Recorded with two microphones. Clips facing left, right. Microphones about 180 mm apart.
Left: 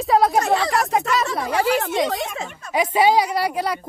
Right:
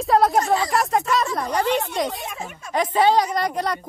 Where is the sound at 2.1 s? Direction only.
85° left.